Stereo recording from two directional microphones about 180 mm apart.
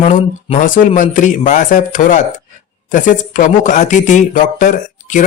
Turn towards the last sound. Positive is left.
turn(degrees=45)  # may be behind; listen again after turning